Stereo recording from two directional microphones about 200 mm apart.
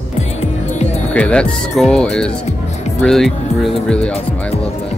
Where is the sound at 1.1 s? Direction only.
5° left (ahead or behind).